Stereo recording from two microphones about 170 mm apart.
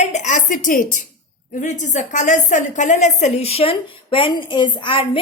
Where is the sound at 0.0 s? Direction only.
45° left (ahead or behind).